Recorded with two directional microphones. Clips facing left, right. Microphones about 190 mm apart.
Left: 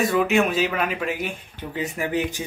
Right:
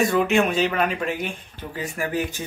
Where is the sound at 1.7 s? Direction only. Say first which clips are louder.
Left 2 dB; 20° left (ahead or behind).